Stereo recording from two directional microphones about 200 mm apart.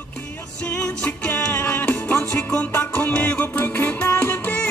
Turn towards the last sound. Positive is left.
turn(degrees=10)  # may be behind; listen again after turning